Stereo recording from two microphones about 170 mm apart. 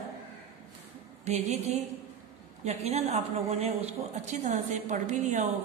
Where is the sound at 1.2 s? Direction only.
40° right (ahead or behind).